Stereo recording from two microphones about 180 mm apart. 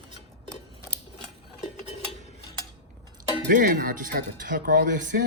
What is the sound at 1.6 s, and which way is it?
Cutlery, 35° left (ahead or behind).